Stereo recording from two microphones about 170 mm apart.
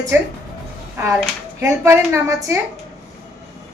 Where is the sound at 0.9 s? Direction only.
15° right (ahead or behind).